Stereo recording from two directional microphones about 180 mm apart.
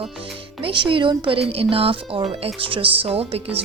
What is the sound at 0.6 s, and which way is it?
A woman's voice, 30° right (ahead or behind).